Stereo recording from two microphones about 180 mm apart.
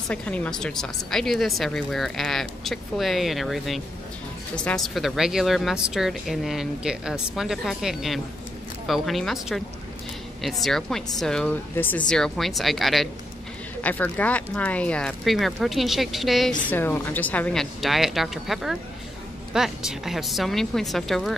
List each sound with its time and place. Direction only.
0.1 s speech: 5° left (ahead or behind)
16.6 s speech: 10° left (ahead or behind)